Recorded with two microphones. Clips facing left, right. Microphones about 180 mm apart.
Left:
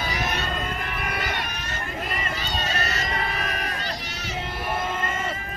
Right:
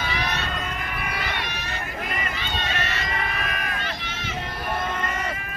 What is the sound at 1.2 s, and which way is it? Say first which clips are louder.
Run: even; 45° left (ahead or behind).